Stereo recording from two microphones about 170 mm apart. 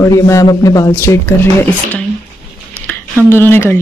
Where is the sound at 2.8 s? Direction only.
15° left (ahead or behind).